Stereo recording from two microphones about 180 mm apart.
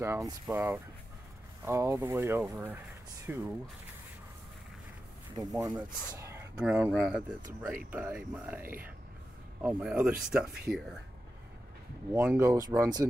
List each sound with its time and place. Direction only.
0.0 s speech: 15° right (ahead or behind)
5.5 s speech: 20° right (ahead or behind); by 10.9 s 5° right (ahead or behind)
12.1 s speech: 5° right (ahead or behind)
12.4 s speech: 20° right (ahead or behind)